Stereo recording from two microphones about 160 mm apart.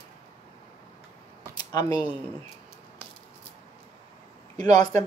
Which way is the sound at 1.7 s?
25° left (ahead or behind).